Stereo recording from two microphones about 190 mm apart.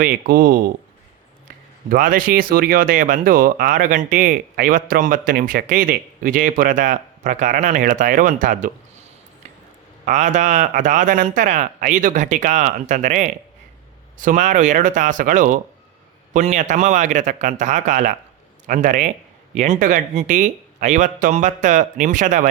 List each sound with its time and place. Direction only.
0.0 s speech: 50° right (ahead or behind)
1.9 s speech: 45° right (ahead or behind)
10.1 s speech: 40° right (ahead or behind)